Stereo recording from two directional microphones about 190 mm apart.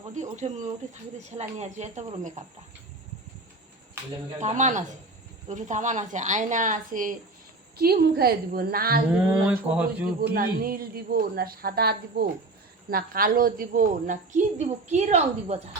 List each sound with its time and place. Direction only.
0.1 s speech: 40° right (ahead or behind)
4.4 s a woman's voice: 40° right (ahead or behind)
9.6 s speech: 5° right (ahead or behind)
10.2 s a woman's voice: 50° right (ahead or behind); by 15.6 s 35° right (ahead or behind)